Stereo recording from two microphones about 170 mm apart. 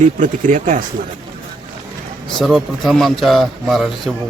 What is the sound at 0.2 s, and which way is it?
Speech, 50° right (ahead or behind).